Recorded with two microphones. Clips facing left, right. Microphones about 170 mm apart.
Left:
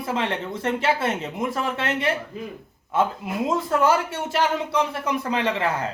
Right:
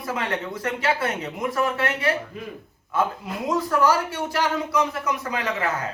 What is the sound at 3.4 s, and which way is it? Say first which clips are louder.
Speech: even; 25° left (ahead or behind).